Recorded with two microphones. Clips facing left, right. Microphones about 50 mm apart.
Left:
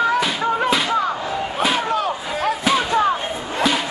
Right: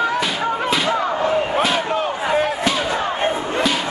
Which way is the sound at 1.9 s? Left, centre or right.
Right.